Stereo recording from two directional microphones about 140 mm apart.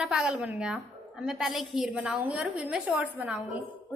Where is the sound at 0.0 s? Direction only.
5° right (ahead or behind).